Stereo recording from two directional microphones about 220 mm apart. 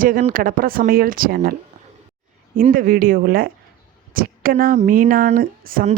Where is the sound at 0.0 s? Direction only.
40° right (ahead or behind).